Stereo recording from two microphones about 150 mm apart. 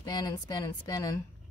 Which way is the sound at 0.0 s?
25° left (ahead or behind).